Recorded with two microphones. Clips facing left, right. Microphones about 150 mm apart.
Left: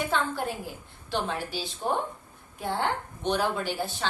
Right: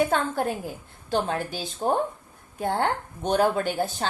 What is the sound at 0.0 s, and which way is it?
A woman's voice, 45° right (ahead or behind).